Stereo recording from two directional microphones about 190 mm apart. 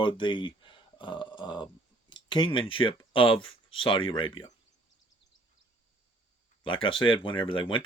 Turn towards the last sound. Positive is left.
turn(degrees=25)  # may be behind; listen again after turning